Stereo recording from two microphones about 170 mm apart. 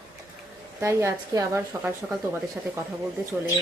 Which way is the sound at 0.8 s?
15° right (ahead or behind).